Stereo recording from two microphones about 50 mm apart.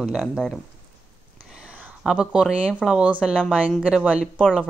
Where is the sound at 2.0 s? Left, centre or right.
Centre.